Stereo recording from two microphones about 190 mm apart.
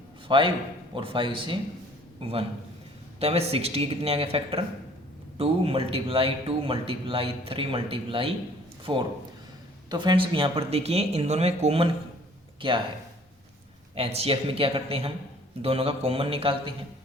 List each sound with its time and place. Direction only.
0.3 s a man's voice: 25° right (ahead or behind)
13.9 s speech: 30° right (ahead or behind)